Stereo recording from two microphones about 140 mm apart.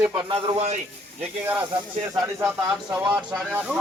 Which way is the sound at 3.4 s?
10° right (ahead or behind).